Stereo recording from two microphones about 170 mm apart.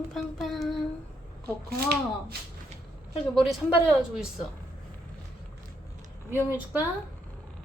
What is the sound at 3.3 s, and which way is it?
Speech, centre (ahead or behind).